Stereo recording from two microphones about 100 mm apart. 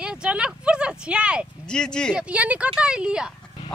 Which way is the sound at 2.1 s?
15° right (ahead or behind).